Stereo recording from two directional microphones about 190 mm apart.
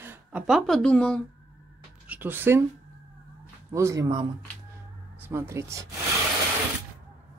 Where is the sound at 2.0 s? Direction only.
10° right (ahead or behind).